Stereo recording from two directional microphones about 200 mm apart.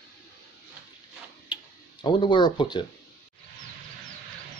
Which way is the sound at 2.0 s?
25° left (ahead or behind).